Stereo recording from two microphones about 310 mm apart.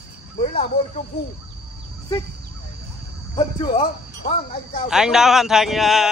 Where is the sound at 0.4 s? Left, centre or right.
Centre.